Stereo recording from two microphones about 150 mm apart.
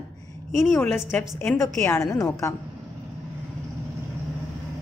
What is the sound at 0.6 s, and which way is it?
Speech, centre (ahead or behind).